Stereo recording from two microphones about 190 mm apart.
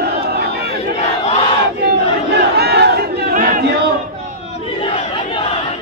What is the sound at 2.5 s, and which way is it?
Battle cry, 60° right (ahead or behind).